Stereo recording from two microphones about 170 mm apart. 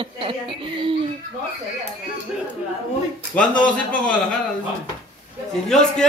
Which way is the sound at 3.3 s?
10° left (ahead or behind).